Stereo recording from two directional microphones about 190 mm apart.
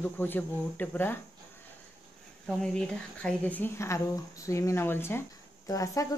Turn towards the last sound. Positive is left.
turn(degrees=15)  # may be behind; listen again after turning